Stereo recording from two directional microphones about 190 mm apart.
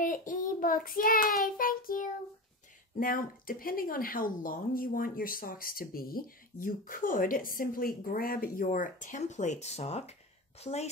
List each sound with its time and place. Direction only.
0.0 s child singing: 45° left (ahead or behind)
3.0 s a woman's voice: 45° left (ahead or behind)